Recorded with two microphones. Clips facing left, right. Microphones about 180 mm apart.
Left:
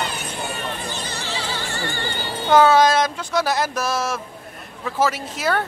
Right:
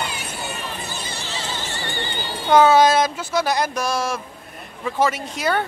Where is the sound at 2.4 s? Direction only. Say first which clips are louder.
Right 1 dB; centre (ahead or behind).